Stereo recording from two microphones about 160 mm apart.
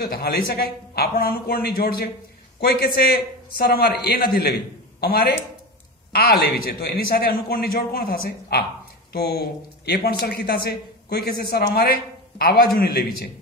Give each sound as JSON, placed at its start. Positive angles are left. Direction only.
{"t": 0.0, "sound": "a man's voice", "side_deg": 75}
{"t": 10.2, "sound": "a man's voice", "side_deg": 70}